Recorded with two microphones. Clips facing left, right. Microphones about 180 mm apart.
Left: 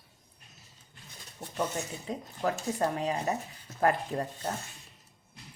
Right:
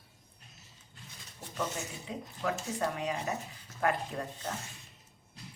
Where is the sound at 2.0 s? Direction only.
40° left (ahead or behind).